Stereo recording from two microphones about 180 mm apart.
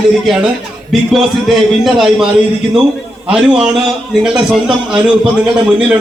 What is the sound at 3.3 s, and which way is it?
A man's voice, 5° right (ahead or behind).